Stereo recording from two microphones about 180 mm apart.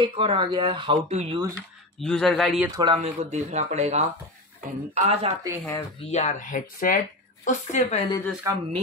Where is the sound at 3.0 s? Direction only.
40° right (ahead or behind).